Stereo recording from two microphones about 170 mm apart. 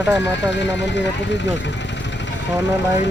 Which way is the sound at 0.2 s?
90° left.